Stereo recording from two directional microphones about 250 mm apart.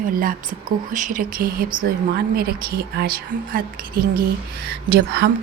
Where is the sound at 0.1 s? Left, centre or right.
Right.